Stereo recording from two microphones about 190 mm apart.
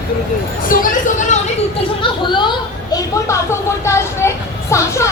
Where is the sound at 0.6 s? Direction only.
45° left (ahead or behind).